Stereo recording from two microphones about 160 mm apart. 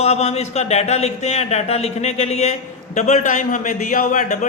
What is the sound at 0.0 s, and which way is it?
Speech, 40° left (ahead or behind).